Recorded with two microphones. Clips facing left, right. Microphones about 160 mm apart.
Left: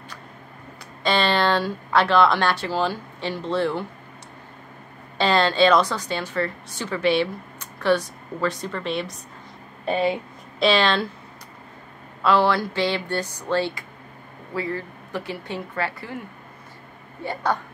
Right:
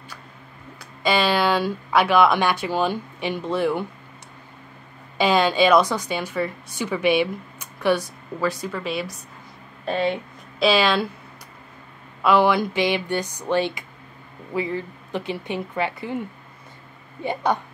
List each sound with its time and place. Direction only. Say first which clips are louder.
1.0 s speech: right 1 dB; 10° right (ahead or behind)
5.1 s a woman's voice: right 1 dB; 10° right (ahead or behind)
12.2 s speech: right 2 dB; 15° right (ahead or behind)
17.2 s a woman's voice: right 2 dB; 20° right (ahead or behind)